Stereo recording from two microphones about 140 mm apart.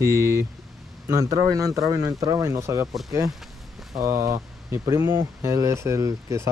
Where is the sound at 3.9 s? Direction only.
20° right (ahead or behind).